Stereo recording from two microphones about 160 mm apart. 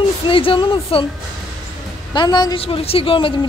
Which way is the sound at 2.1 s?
25° left (ahead or behind).